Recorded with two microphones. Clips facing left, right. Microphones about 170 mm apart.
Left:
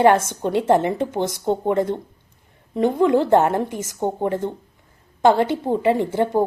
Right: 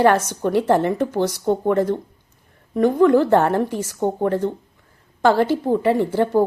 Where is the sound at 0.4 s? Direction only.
20° left (ahead or behind).